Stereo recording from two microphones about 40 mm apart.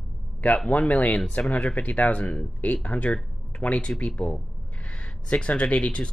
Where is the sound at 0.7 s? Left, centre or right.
Left.